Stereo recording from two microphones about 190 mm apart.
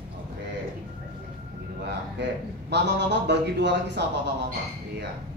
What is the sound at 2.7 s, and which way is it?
A man's voice, 65° right (ahead or behind).